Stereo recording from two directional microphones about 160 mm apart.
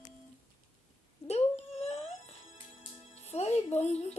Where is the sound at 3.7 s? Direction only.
40° left (ahead or behind).